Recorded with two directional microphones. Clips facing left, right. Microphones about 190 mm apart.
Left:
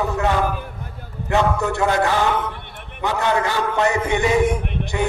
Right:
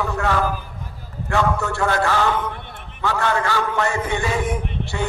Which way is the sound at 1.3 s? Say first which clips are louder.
Left 2 dB; 20° left (ahead or behind).